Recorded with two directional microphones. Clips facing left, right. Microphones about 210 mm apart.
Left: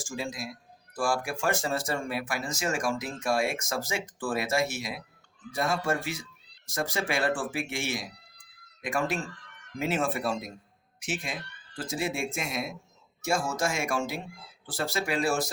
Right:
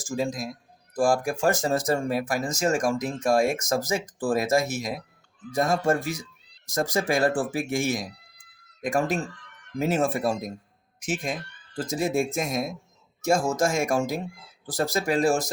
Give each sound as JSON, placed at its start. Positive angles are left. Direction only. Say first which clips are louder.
{"t": 0.0, "sound": "speech", "louder": "right 7 dB", "side_deg": -40}